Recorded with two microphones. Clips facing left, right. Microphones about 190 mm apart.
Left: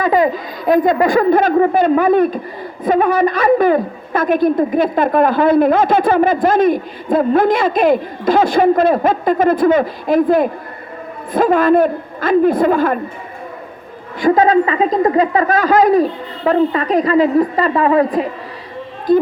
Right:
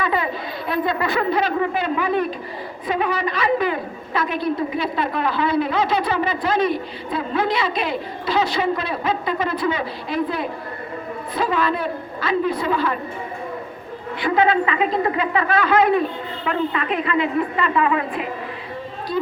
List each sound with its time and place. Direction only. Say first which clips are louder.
0.0 s a woman's voice: left 9 dB; 45° left (ahead or behind)
14.2 s speech: left 7 dB; 45° left (ahead or behind)
19.1 s a woman's voice: left 12 dB; 50° left (ahead or behind)